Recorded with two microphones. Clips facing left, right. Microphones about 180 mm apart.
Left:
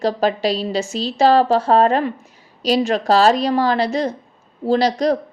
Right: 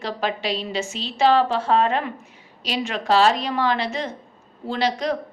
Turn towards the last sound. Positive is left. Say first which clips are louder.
# left 7 dB
turn(degrees=40)  # may be behind; listen again after turning